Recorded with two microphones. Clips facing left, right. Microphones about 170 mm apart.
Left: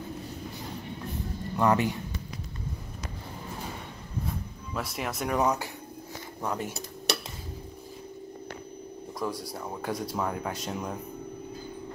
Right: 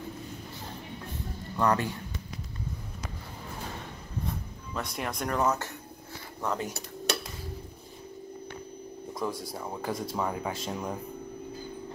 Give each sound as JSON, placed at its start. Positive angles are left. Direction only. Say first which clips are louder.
{"t": 1.6, "sound": "speech", "louder": "left 2 dB", "side_deg": 20}
{"t": 4.7, "sound": "speech", "louder": "left 1 dB", "side_deg": 5}
{"t": 5.4, "sound": "speech", "louder": "even", "side_deg": 15}
{"t": 9.2, "sound": "speech", "louder": "even", "side_deg": 0}